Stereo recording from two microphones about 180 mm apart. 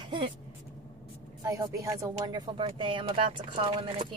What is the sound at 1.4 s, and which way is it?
A woman's voice, 20° right (ahead or behind).